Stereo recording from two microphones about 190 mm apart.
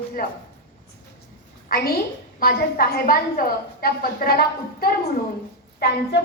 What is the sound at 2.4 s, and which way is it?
A woman's voice, 55° left (ahead or behind).